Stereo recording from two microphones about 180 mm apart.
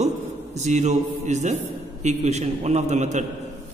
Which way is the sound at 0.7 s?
40° right (ahead or behind).